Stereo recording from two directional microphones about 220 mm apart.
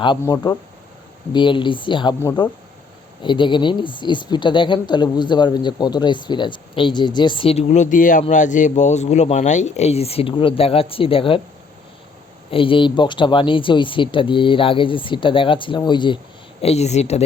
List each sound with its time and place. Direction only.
0.2 s a woman's voice: 15° left (ahead or behind)
12.5 s a woman's voice: 25° left (ahead or behind)